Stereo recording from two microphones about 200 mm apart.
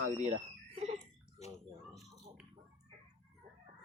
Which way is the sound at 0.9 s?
35° left (ahead or behind).